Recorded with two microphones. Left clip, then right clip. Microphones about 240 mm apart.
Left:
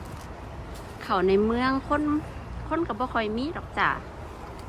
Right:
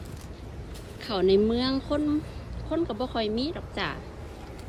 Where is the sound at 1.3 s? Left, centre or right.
Centre.